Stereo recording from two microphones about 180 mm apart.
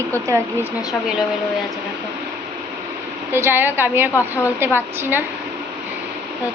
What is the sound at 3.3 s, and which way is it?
A woman's voice, 10° right (ahead or behind).